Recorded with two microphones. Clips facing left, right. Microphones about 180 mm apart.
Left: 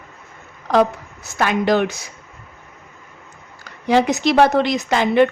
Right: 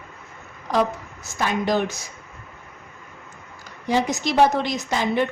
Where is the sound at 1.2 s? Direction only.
70° left (ahead or behind).